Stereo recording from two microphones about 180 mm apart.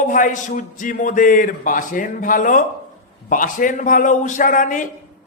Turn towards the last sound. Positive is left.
turn(degrees=45)  # may be behind; listen again after turning